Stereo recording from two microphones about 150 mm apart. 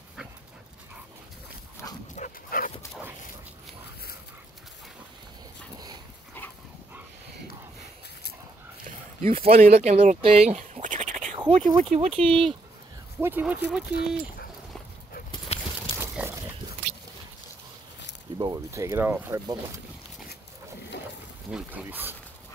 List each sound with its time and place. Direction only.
2.1 s dog: 65° left (ahead or behind)
9.2 s speech: 40° right (ahead or behind); by 11.3 s 55° right (ahead or behind)
11.3 s a sound: 35° right (ahead or behind)
11.7 s speech: 50° right (ahead or behind)
13.2 s speech: 10° right (ahead or behind)
15.3 s clip-clop: 40° left (ahead or behind)
16.0 s a sound: 15° right (ahead or behind)
18.4 s speech: 25° right (ahead or behind)
21.5 s speech: 10° right (ahead or behind)